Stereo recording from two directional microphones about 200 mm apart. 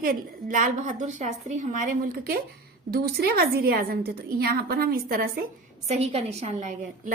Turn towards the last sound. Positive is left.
turn(degrees=-35)  # may be behind; listen again after turning